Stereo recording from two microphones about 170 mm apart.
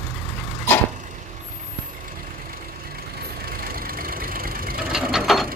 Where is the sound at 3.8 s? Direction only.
55° right (ahead or behind).